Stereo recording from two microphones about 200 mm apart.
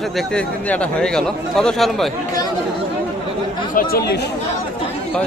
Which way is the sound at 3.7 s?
45° left (ahead or behind).